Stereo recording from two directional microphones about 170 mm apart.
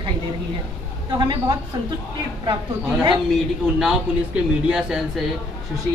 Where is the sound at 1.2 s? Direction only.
25° right (ahead or behind).